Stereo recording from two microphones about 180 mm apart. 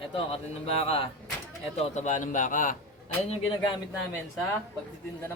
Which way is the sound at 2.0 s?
45° left (ahead or behind).